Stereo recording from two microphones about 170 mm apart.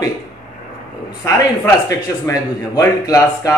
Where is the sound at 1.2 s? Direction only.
15° left (ahead or behind).